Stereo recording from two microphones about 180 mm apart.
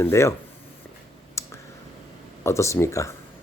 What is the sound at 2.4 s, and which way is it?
Speech, 15° left (ahead or behind).